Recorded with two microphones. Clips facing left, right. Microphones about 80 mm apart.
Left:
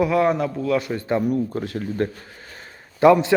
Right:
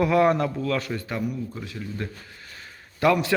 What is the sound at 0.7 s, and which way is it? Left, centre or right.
Speech, left.